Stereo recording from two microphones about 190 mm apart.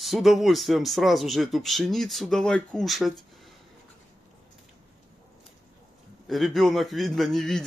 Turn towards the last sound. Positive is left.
turn(degrees=0)  # may be behind; listen again after turning